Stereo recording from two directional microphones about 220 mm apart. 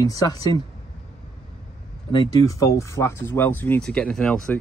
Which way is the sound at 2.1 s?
20° left (ahead or behind).